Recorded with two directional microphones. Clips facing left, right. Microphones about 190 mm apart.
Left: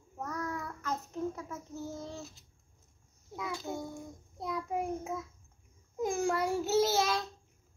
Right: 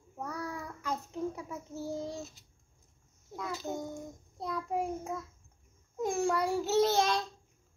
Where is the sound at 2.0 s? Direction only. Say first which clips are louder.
Right 3 dB; 15° right (ahead or behind).